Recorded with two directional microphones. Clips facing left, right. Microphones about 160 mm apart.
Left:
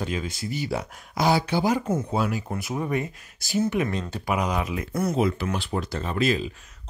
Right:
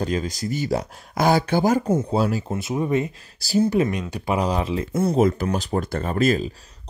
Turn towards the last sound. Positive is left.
turn(degrees=-45)  # may be behind; listen again after turning